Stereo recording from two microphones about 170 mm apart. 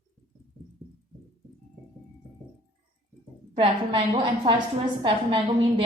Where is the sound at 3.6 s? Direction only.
30° right (ahead or behind).